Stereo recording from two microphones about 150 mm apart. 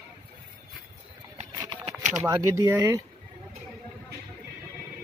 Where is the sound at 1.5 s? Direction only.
30° right (ahead or behind).